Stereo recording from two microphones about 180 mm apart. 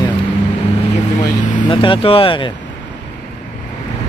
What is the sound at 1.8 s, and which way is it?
Speech, 30° left (ahead or behind).